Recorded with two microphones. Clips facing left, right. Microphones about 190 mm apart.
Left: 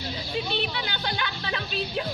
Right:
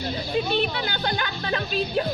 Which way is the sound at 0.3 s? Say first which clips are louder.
Right 5 dB; 50° right (ahead or behind).